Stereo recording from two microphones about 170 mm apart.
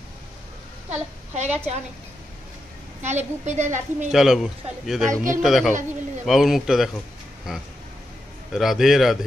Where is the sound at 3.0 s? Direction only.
45° right (ahead or behind).